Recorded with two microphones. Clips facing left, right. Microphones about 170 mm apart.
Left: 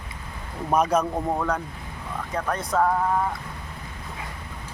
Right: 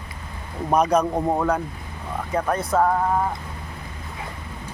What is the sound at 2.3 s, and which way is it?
Speech, 5° right (ahead or behind).